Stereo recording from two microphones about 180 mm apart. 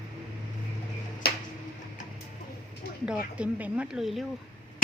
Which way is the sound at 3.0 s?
5° right (ahead or behind).